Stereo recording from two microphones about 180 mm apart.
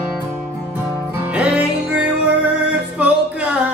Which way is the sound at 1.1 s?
5° right (ahead or behind).